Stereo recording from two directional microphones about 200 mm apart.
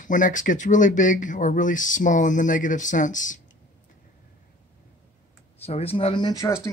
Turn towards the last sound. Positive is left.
turn(degrees=15)  # may be behind; listen again after turning